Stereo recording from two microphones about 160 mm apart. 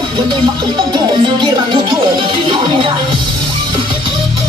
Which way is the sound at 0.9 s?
30° right (ahead or behind).